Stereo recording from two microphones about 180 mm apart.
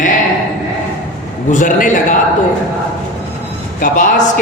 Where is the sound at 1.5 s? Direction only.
45° left (ahead or behind).